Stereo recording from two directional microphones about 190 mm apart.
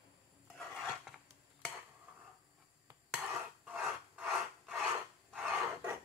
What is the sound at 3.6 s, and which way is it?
Filing, 5° right (ahead or behind).